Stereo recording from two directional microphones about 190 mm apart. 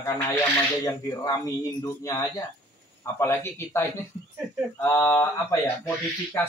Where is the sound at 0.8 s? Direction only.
20° left (ahead or behind).